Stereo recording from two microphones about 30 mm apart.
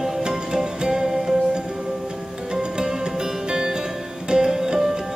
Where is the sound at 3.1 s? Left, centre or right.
Centre.